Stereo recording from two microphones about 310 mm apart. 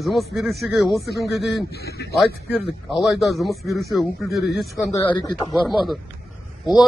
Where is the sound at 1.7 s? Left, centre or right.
Left.